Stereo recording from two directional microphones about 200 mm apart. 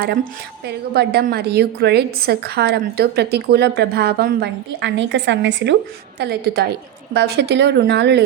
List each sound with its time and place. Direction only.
0.6 s a woman's voice: 50° right (ahead or behind)